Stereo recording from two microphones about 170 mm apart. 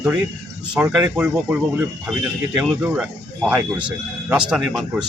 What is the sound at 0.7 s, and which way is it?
Speech, 5° right (ahead or behind).